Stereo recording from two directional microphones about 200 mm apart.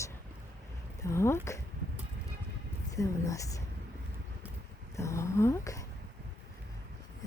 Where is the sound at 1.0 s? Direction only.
15° left (ahead or behind).